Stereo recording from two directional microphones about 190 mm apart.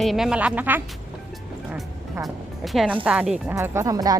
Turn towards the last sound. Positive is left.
turn(degrees=-20)  # may be behind; listen again after turning